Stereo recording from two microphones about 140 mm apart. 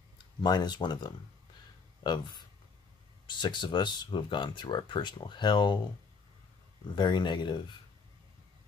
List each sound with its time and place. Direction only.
0.4 s speech: 30° left (ahead or behind)
7.0 s speech: 30° left (ahead or behind)